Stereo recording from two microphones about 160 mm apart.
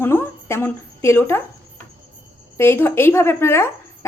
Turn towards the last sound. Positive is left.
turn(degrees=15)  # may be behind; listen again after turning